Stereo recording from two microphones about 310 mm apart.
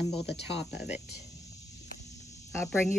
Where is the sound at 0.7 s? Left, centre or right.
Centre.